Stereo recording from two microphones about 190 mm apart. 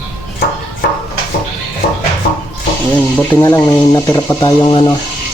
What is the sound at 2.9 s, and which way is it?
Speech, 10° left (ahead or behind).